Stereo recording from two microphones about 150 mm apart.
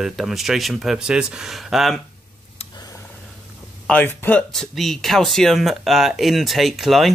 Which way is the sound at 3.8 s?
10° left (ahead or behind).